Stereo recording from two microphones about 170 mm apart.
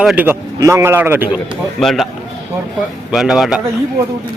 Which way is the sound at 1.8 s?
Centre (ahead or behind).